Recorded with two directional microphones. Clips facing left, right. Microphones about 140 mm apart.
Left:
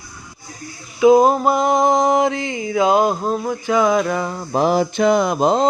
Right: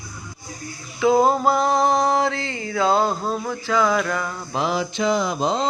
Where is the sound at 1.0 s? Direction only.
15° left (ahead or behind).